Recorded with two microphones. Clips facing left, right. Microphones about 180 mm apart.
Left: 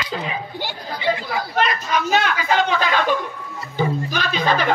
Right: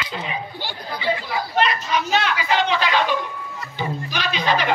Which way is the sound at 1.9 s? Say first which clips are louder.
Left 2 dB; 50° left (ahead or behind).